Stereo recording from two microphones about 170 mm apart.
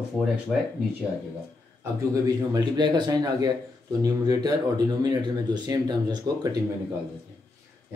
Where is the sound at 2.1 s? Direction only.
25° right (ahead or behind).